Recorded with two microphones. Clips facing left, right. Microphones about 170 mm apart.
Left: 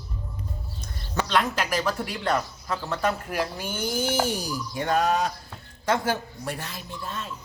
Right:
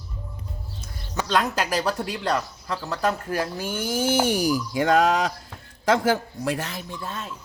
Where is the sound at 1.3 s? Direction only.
40° right (ahead or behind).